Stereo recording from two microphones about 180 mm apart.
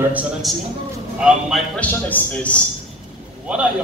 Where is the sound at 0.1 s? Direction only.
5° right (ahead or behind).